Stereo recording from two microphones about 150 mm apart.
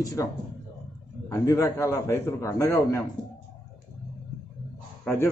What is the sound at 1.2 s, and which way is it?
A man's voice, 20° left (ahead or behind).